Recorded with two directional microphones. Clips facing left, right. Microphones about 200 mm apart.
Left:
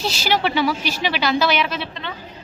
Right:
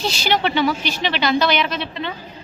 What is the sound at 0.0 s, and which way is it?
A woman's voice, 5° left (ahead or behind).